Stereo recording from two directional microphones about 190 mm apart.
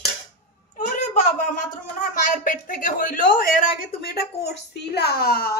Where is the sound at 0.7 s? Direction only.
40° left (ahead or behind).